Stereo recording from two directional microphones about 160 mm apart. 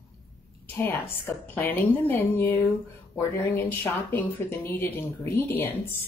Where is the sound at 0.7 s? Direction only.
10° left (ahead or behind).